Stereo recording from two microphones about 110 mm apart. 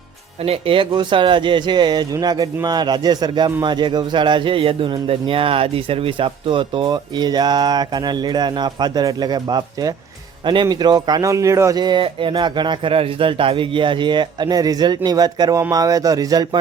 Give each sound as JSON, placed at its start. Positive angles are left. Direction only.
{"t": 0.4, "sound": "a man's voice", "side_deg": -60}
{"t": 11.8, "sound": "a man's voice", "side_deg": -45}